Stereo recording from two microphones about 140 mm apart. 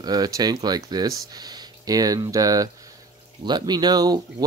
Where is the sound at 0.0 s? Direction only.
30° right (ahead or behind).